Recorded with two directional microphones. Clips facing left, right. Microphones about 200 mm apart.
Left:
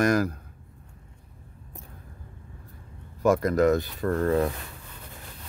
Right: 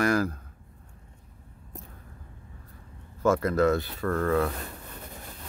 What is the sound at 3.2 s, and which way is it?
Speech, 15° left (ahead or behind).